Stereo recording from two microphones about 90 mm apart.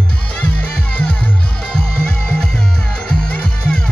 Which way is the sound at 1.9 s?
15° left (ahead or behind).